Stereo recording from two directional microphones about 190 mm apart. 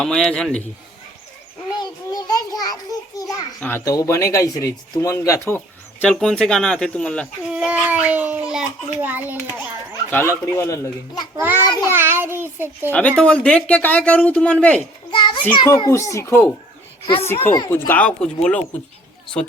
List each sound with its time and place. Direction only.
0.0 s a man's voice: 5° left (ahead or behind)
1.8 s a sound: 20° left (ahead or behind)
3.2 s a child's voice: 20° left (ahead or behind)
7.5 s a child's voice: 5° right (ahead or behind)
10.1 s speech: 10° left (ahead or behind)
11.3 s a child's voice: 10° right (ahead or behind)
11.6 s child singing: 20° left (ahead or behind)
11.9 s a child's voice: 10° right (ahead or behind)
12.9 s speech: 10° left (ahead or behind)
15.1 s a sound: 25° left (ahead or behind)
15.5 s speech: 20° left (ahead or behind)
17.7 s speech: 10° left (ahead or behind)